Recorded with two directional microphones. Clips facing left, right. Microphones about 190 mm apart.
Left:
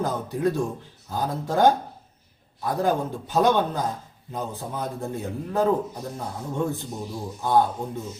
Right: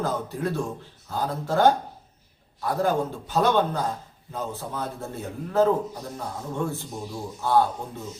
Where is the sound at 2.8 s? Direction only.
15° left (ahead or behind).